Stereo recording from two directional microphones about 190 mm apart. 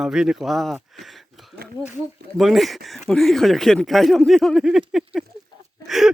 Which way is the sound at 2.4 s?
Centre (ahead or behind).